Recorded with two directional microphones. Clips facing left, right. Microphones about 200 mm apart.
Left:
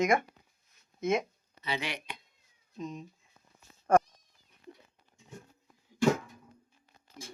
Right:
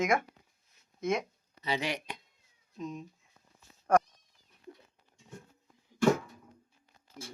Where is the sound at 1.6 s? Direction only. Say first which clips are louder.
Right 3 dB; 40° right (ahead or behind).